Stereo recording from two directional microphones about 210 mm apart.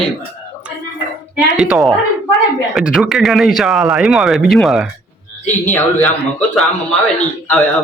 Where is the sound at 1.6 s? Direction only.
Centre (ahead or behind).